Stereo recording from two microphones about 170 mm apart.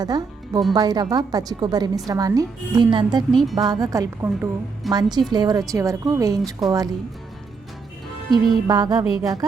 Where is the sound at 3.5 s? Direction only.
25° right (ahead or behind).